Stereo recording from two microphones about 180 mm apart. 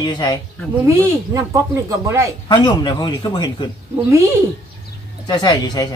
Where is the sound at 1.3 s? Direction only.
15° right (ahead or behind).